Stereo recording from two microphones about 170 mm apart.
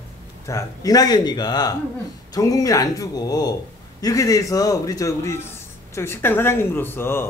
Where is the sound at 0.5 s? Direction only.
20° left (ahead or behind).